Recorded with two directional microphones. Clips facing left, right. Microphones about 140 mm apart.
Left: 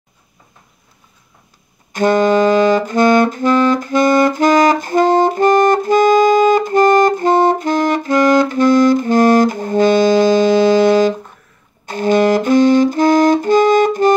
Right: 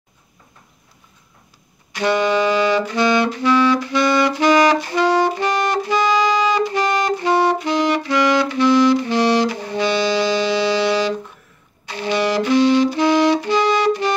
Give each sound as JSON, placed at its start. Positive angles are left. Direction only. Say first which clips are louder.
{"t": 1.9, "sound": "saxophone", "louder": "left 5 dB", "side_deg": 45}
{"t": 11.8, "sound": "music", "louder": "left 7 dB", "side_deg": 50}